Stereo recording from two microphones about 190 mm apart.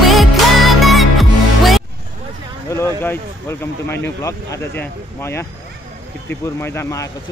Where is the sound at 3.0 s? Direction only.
10° left (ahead or behind).